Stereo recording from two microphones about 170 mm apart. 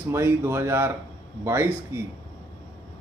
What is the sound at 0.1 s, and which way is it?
A man's voice, 15° right (ahead or behind).